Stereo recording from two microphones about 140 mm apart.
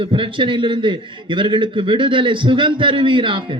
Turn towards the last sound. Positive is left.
turn(degrees=-35)  # may be behind; listen again after turning